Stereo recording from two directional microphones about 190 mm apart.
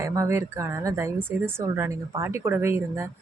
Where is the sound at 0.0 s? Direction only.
15° right (ahead or behind).